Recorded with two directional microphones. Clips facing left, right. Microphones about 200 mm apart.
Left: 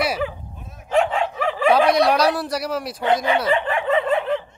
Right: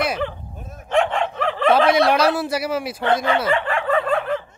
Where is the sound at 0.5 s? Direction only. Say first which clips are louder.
Right 4 dB; 50° right (ahead or behind).